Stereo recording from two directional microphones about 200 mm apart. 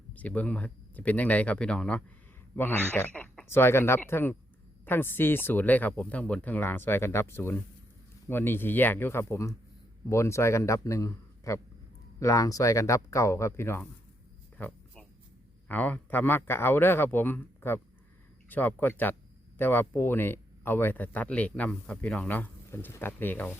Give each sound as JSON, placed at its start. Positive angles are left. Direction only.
{"t": 0.1, "sound": "speech", "side_deg": 5}